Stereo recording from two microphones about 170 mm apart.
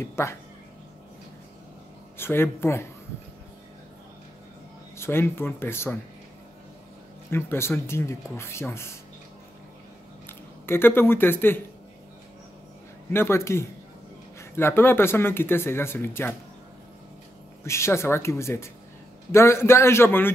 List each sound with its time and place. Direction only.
0.0 s speech: 15° left (ahead or behind)
2.1 s speech: 15° left (ahead or behind)
4.9 s speech: 15° left (ahead or behind)
7.2 s speech: 15° left (ahead or behind)
10.2 s speech: 15° left (ahead or behind)
13.1 s speech: 15° left (ahead or behind)
17.6 s speech: 15° left (ahead or behind)